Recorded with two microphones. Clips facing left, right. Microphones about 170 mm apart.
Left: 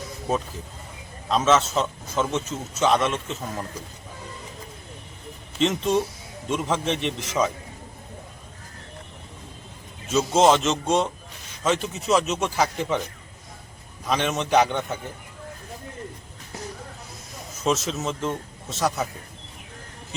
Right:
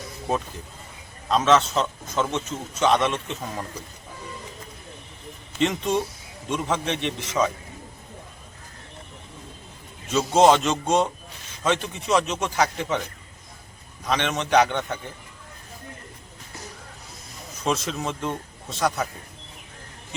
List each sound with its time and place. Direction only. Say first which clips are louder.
1.3 s a man's voice: right 1 dB; centre (ahead or behind)
5.5 s a man's voice: left 1 dB; centre (ahead or behind)
10.1 s a man's voice: right 1 dB; centre (ahead or behind)
14.1 s a man's voice: even; 5° left (ahead or behind)
17.6 s a man's voice: left 1 dB; 5° left (ahead or behind)